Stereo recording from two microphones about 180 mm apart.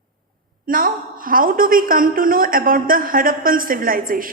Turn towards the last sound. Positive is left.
turn(degrees=-50)  # may be behind; listen again after turning